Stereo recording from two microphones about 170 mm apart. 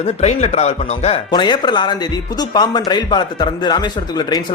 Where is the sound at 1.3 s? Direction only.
25° left (ahead or behind).